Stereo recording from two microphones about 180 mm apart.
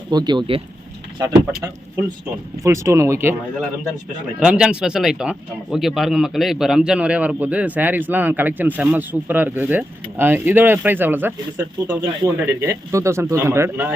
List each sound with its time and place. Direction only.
0.1 s speech: 25° right (ahead or behind)
2.6 s speech: 15° right (ahead or behind)
4.4 s speech: 5° right (ahead or behind)